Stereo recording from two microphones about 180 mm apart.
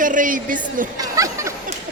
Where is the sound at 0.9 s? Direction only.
20° right (ahead or behind).